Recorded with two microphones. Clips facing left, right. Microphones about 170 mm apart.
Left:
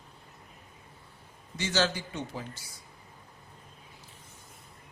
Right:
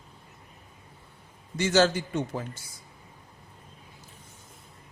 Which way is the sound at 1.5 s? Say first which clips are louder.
Right 7 dB; 50° right (ahead or behind).